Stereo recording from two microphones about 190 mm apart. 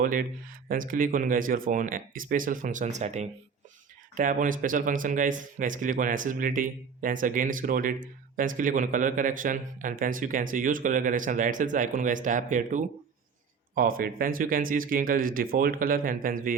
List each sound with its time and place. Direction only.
0.0 s speech: 45° right (ahead or behind)